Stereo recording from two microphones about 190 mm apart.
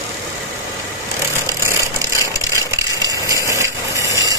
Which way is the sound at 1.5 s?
15° right (ahead or behind).